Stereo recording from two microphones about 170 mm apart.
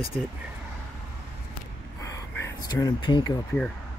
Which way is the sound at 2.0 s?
20° left (ahead or behind).